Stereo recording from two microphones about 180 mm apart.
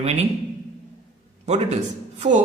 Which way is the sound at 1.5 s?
35° right (ahead or behind).